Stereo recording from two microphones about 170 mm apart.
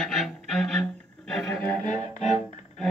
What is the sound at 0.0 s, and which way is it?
Music, centre (ahead or behind).